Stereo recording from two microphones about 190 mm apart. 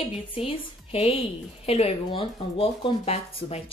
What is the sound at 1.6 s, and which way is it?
Speech, 30° left (ahead or behind).